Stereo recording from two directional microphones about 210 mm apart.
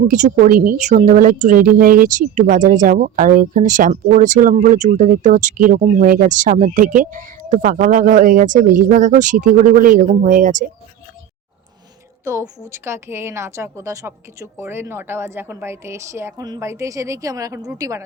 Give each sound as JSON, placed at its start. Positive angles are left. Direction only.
{"t": 0.1, "sound": "speech", "side_deg": -40}
{"t": 12.2, "sound": "a woman's voice", "side_deg": -15}